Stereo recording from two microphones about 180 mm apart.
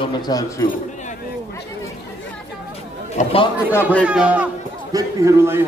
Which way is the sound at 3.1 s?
30° left (ahead or behind).